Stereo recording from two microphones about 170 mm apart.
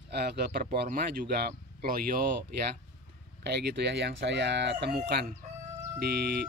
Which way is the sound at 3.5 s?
85° right.